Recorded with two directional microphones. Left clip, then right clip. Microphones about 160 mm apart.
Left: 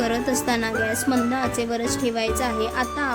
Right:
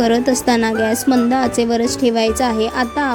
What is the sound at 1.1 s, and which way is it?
Speech, 10° right (ahead or behind).